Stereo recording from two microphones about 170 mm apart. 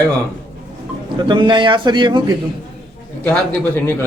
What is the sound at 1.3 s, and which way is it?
Speech, 30° right (ahead or behind).